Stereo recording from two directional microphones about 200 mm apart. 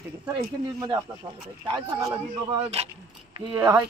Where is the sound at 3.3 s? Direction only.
15° right (ahead or behind).